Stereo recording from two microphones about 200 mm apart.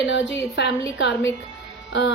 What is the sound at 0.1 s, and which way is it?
A woman's voice, 65° left (ahead or behind).